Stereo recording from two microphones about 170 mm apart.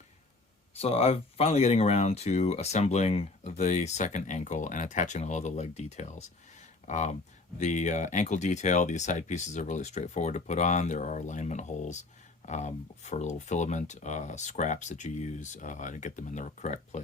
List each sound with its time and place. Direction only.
0.8 s speech: 35° left (ahead or behind)